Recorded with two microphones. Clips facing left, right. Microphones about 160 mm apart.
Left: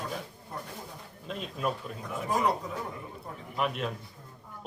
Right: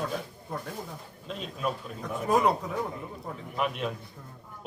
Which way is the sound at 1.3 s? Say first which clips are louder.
Even; centre (ahead or behind).